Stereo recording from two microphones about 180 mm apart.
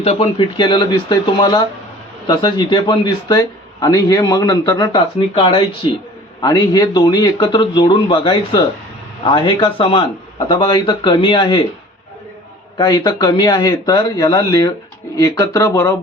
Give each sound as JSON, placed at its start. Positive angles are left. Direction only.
{"t": 0.0, "sound": "a man's voice", "side_deg": 30}
{"t": 12.7, "sound": "a man's voice", "side_deg": 25}